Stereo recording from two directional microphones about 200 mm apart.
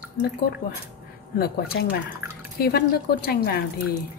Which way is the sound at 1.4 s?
50° left (ahead or behind).